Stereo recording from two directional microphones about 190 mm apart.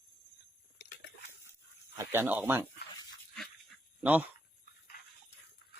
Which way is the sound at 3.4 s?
Centre (ahead or behind).